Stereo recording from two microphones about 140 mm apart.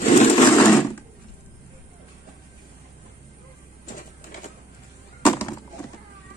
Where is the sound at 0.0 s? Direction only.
55° left (ahead or behind).